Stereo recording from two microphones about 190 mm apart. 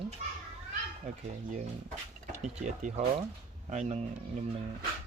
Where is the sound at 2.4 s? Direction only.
40° right (ahead or behind).